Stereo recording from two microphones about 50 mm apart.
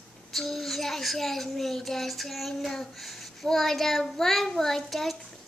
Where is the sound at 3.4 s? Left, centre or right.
Centre.